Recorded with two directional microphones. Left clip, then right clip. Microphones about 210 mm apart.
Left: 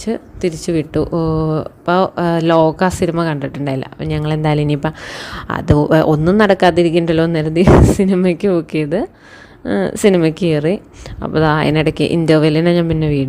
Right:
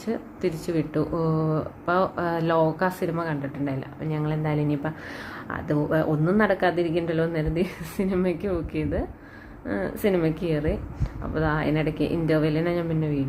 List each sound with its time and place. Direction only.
0.0 s speech: 35° left (ahead or behind)